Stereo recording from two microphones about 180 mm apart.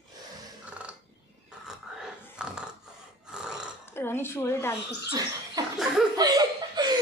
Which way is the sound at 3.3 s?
5° right (ahead or behind).